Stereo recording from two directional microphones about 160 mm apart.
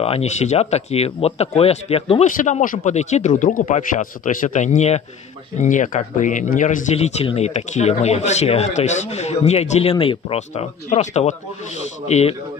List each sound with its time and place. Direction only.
0.0 s speech: 40° left (ahead or behind)
2.2 s speech: 50° left (ahead or behind)